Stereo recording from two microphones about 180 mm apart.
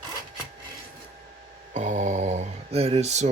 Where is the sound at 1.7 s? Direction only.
40° right (ahead or behind).